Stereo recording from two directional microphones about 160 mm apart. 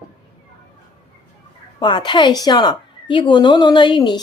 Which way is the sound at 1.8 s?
30° left (ahead or behind).